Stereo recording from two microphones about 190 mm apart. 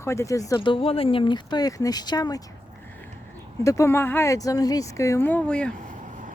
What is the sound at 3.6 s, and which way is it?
Speech, 15° left (ahead or behind).